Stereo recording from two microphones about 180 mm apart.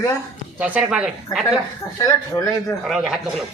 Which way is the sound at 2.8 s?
Centre (ahead or behind).